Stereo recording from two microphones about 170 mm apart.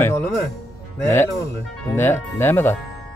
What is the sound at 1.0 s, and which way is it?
Speech, 15° left (ahead or behind).